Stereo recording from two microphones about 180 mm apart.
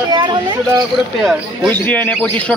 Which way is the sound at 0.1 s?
25° right (ahead or behind).